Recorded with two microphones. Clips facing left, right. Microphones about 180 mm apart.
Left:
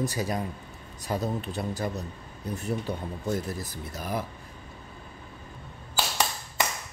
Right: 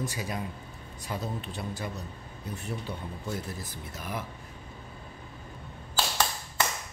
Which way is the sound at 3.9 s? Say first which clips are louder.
Left 5 dB; 40° left (ahead or behind).